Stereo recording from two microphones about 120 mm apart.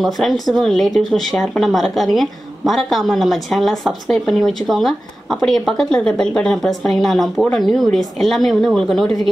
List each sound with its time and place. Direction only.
0.0 s speech: centre (ahead or behind)